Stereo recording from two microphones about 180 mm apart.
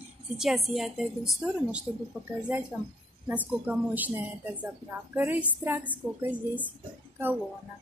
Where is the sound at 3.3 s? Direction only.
10° right (ahead or behind).